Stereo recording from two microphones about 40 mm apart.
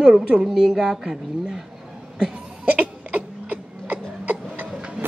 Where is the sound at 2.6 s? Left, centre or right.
Right.